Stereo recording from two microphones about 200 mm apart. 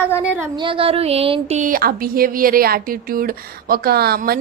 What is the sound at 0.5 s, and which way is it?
Speech, 25° right (ahead or behind).